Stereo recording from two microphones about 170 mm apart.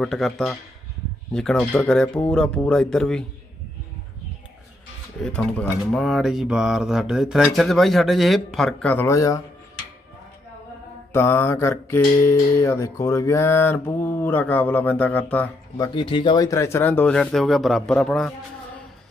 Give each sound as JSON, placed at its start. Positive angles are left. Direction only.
{"t": 0.0, "sound": "speech", "side_deg": 5}
{"t": 5.2, "sound": "speech", "side_deg": 5}
{"t": 11.1, "sound": "mantra", "side_deg": 15}
{"t": 15.9, "sound": "mantra", "side_deg": 30}